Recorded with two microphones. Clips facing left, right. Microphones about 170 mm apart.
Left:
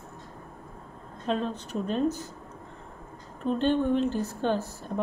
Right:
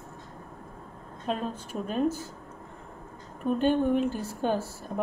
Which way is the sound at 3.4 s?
10° right (ahead or behind).